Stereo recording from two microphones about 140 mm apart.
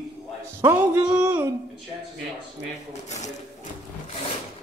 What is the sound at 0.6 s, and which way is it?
Speech, 15° right (ahead or behind).